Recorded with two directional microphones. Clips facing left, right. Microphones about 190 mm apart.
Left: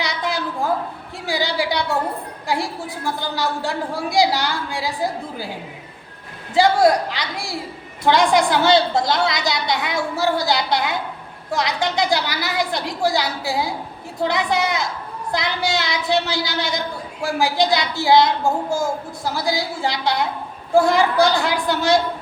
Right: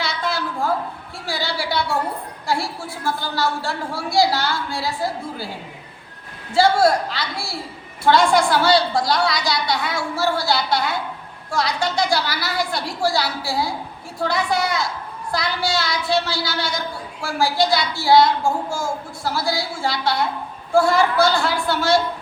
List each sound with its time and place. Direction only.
0.0 s a sound: 15° left (ahead or behind)
1.3 s a woman's voice: 15° left (ahead or behind)
6.5 s a woman's voice: 15° left (ahead or behind)